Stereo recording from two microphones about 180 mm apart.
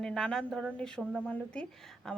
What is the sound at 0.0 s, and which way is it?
A woman's voice, 5° left (ahead or behind).